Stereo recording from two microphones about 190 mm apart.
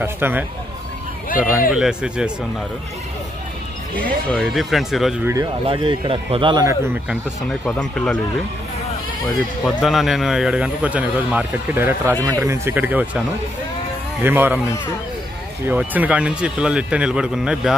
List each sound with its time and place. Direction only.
0.0 s a man's voice: 10° right (ahead or behind)
1.7 s speech: 5° right (ahead or behind)
3.9 s speech: 5° left (ahead or behind)
5.2 s a man's voice: 15° right (ahead or behind)
5.7 s a man's voice: 25° right (ahead or behind)
7.6 s speech: 5° left (ahead or behind)
9.8 s a man's voice: centre (ahead or behind)
14.2 s a man's voice: 10° right (ahead or behind)
15.7 s speech: 10° right (ahead or behind)